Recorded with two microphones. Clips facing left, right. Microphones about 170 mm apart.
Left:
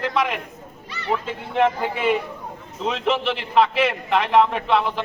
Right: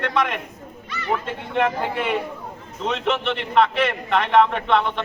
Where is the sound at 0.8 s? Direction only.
30° left (ahead or behind).